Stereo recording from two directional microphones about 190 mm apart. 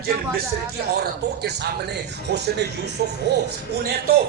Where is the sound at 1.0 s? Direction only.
60° right (ahead or behind).